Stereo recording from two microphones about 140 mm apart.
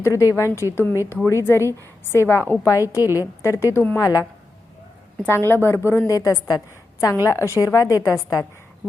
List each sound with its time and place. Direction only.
0.0 s a woman's voice: 20° left (ahead or behind)